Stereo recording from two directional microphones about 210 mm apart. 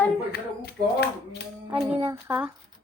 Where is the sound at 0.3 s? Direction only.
50° left (ahead or behind).